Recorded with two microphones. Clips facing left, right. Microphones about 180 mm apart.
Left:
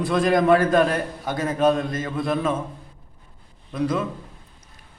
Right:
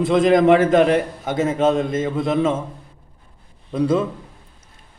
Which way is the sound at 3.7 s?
25° right (ahead or behind).